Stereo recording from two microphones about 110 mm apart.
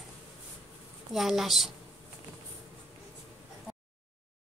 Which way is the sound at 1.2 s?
Centre (ahead or behind).